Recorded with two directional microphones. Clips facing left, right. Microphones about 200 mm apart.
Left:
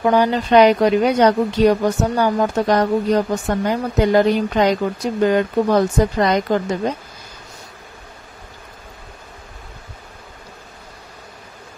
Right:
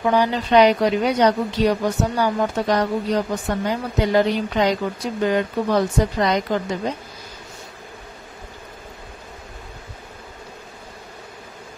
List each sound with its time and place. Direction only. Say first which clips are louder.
0.0 s a woman's voice: left 3 dB; 50° left (ahead or behind)